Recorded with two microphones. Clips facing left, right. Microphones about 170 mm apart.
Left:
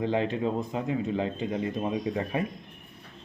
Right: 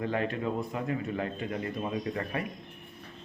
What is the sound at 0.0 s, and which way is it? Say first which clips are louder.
Speech: left 4 dB; 25° left (ahead or behind).